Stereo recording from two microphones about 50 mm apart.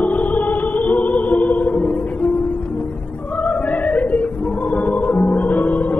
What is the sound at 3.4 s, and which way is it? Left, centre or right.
Music, left.